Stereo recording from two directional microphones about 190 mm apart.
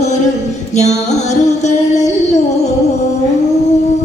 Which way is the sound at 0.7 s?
35° left (ahead or behind).